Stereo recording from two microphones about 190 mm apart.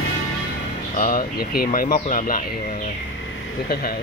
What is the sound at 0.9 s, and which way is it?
Speech, 50° left (ahead or behind).